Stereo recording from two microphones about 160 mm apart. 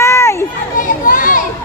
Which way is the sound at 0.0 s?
15° left (ahead or behind).